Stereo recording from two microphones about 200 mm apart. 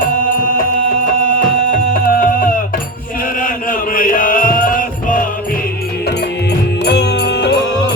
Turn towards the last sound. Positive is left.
turn(degrees=55)  # may be behind; listen again after turning